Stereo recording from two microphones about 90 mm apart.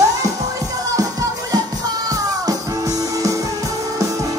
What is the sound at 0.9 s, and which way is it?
Music, 40° right (ahead or behind).